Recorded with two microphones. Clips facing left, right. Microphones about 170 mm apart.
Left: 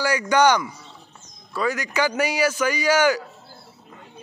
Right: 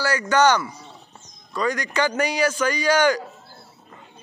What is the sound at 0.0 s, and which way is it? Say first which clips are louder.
Speech: even; 15° left (ahead or behind).